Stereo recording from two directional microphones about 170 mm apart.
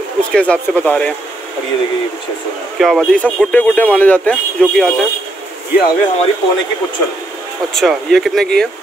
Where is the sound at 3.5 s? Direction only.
10° left (ahead or behind).